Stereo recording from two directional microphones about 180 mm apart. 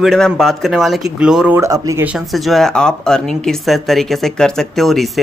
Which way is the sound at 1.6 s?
15° right (ahead or behind).